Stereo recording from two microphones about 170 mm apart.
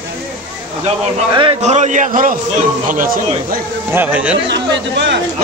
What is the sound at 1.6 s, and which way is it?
A man's voice, 45° right (ahead or behind).